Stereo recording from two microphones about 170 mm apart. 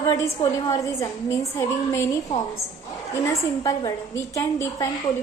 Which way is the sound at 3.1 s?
20° left (ahead or behind).